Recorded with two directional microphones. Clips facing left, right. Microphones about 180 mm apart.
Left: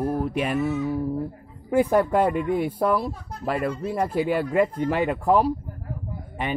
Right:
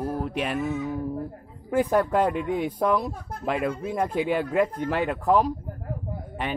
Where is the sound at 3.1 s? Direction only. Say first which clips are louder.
Even; 50° right (ahead or behind).